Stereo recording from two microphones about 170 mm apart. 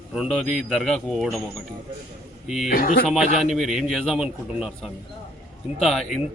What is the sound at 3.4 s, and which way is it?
A man's voice, centre (ahead or behind).